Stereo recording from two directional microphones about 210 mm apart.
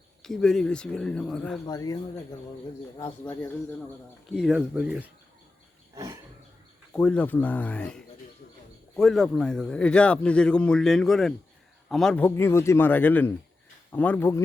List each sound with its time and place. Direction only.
0.2 s a man's voice: centre (ahead or behind)
1.6 s a man's voice: 15° left (ahead or behind)
4.4 s a man's voice: 5° right (ahead or behind)
5.9 s wild animals: 15° right (ahead or behind)
6.9 s a man's voice: 5° left (ahead or behind)